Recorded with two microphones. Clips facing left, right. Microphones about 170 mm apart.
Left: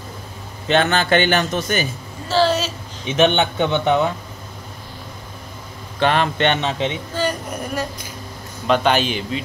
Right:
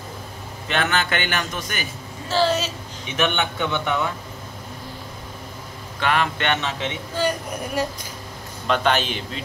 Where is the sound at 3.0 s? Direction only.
25° left (ahead or behind).